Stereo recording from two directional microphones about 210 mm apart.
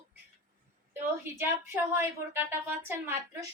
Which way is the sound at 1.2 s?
10° right (ahead or behind).